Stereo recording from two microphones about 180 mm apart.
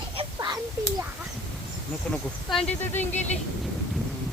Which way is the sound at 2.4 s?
5° left (ahead or behind).